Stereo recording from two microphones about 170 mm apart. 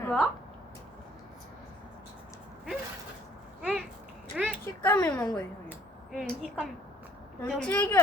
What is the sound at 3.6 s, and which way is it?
Speech, 5° right (ahead or behind).